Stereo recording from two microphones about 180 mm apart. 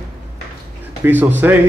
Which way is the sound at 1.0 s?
10° right (ahead or behind).